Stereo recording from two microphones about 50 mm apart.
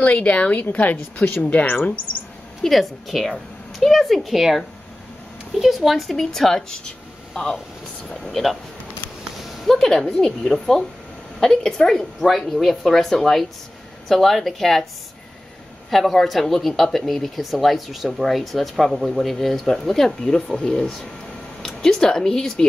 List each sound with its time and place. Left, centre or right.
0.0 s speech: left
2.6 s speech: centre
5.6 s speech: centre
8.1 s speech: centre
9.5 s a sound: centre
9.8 s speech: centre
15.9 s speech: centre